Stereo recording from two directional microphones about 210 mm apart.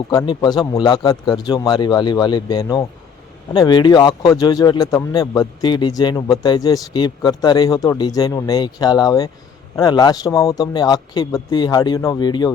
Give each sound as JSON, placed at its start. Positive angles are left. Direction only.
{"t": 0.1, "sound": "speech", "side_deg": 20}